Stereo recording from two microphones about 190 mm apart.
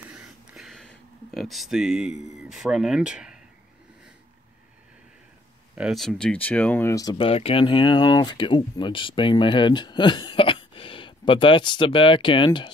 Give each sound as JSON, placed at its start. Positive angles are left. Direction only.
{"t": 0.0, "sound": "a sound", "side_deg": -5}
{"t": 2.3, "sound": "speech", "side_deg": 0}
{"t": 5.8, "sound": "speech", "side_deg": 0}